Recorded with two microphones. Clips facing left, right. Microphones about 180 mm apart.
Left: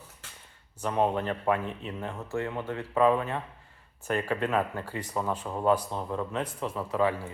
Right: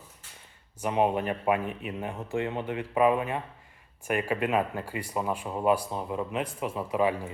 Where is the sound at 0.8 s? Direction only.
15° right (ahead or behind).